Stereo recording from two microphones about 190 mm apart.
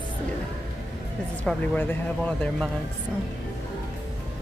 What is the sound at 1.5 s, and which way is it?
Speech, 10° left (ahead or behind).